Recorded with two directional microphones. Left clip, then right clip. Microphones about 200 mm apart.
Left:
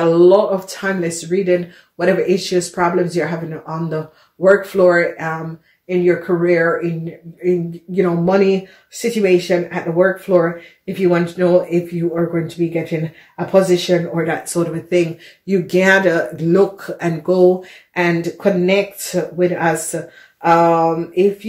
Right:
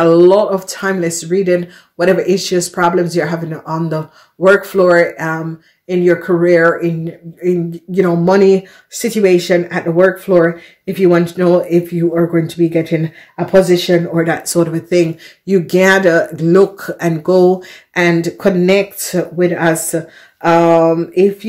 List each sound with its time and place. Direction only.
0.0 s speech: 35° right (ahead or behind)
7.9 s speech: 40° right (ahead or behind)